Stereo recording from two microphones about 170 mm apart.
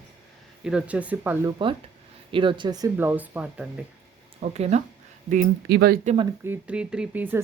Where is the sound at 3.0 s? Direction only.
10° right (ahead or behind).